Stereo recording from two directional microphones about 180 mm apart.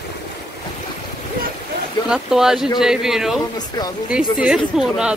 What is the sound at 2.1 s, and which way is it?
Speech, 5° right (ahead or behind).